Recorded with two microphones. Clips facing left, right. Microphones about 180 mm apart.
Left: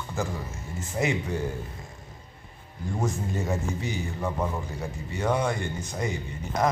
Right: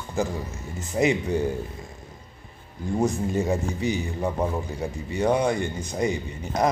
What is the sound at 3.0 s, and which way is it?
A man's voice, 15° right (ahead or behind).